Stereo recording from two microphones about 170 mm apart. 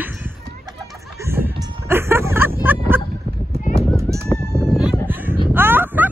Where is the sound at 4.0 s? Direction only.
15° right (ahead or behind).